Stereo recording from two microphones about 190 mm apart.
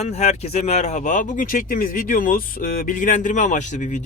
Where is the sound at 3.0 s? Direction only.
40° left (ahead or behind).